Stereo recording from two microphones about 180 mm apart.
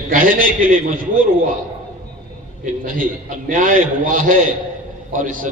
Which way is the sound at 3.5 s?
45° right (ahead or behind).